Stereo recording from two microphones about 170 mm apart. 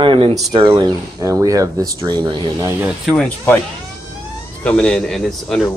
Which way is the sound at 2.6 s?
15° right (ahead or behind).